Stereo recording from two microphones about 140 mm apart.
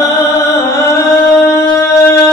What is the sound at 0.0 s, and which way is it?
Music, 25° left (ahead or behind).